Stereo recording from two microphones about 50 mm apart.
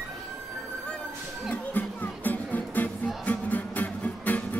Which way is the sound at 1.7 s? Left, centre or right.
Left.